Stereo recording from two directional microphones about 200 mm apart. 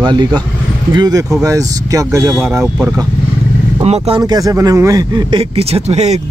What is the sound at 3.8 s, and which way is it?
Speech, 30° right (ahead or behind).